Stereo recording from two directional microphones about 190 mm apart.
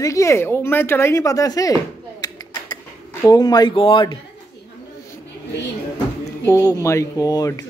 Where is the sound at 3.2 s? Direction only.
20° left (ahead or behind).